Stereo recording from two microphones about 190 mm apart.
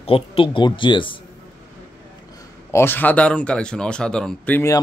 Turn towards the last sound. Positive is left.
turn(degrees=10)  # may be behind; listen again after turning